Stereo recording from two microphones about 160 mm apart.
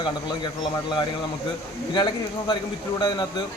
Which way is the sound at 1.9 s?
25° left (ahead or behind).